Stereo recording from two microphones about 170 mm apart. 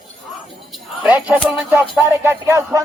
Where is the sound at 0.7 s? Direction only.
5° right (ahead or behind).